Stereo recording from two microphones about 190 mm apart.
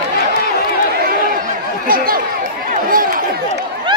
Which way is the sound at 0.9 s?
50° right (ahead or behind).